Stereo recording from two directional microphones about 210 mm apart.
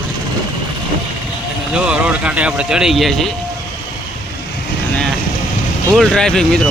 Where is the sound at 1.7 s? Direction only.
5° right (ahead or behind).